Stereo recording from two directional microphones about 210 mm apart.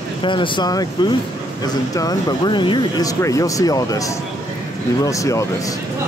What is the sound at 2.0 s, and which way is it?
Speech, 15° left (ahead or behind).